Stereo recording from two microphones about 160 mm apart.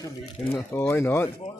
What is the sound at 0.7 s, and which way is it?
Speech, 20° left (ahead or behind).